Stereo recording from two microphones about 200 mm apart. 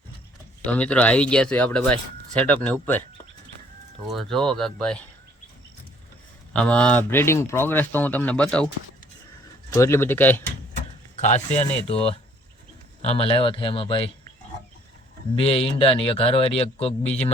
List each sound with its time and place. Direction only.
0.6 s speech: 5° left (ahead or behind)
4.1 s speech: centre (ahead or behind)
6.5 s speech: 5° left (ahead or behind)
11.2 s a man's voice: 35° left (ahead or behind)
15.4 s a man's voice: 30° left (ahead or behind)